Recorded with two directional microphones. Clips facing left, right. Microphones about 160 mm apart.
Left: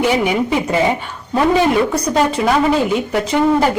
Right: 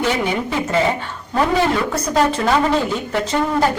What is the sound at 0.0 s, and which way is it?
Speech, 15° left (ahead or behind).